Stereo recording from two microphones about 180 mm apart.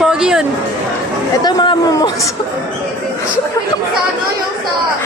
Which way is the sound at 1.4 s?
25° left (ahead or behind).